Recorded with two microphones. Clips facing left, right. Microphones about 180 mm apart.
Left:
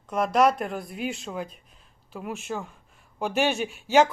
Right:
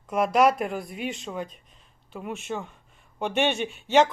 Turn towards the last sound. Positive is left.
turn(degrees=5)  # may be behind; listen again after turning